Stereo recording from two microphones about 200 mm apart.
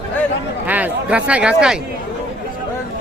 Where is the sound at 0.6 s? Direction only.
5° right (ahead or behind).